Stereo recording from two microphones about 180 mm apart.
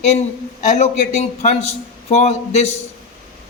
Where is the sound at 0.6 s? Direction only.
40° left (ahead or behind).